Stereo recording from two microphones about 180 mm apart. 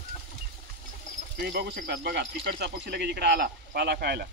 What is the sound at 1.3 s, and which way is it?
Speech, 60° right (ahead or behind).